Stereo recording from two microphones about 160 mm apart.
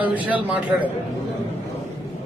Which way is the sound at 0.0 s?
10° right (ahead or behind).